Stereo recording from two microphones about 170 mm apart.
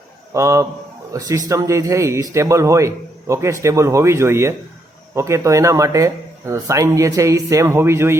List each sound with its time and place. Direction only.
0.3 s speech: 20° right (ahead or behind)